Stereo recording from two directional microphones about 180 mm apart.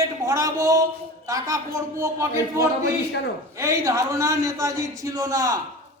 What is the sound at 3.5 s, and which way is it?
A man's voice, 20° right (ahead or behind).